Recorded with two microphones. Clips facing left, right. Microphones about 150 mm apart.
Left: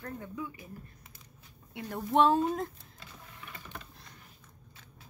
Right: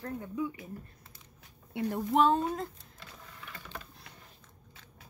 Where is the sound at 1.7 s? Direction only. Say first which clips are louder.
Right 7 dB; 25° right (ahead or behind).